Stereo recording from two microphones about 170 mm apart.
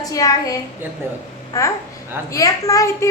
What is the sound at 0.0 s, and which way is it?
A woman's voice, 20° left (ahead or behind).